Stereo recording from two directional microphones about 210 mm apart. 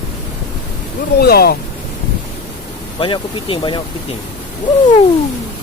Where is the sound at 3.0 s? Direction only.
25° left (ahead or behind).